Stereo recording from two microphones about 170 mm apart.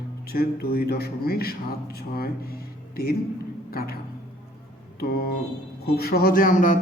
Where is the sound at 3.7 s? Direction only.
60° left (ahead or behind).